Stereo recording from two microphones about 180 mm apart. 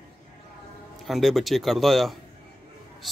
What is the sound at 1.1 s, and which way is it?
Speech, centre (ahead or behind).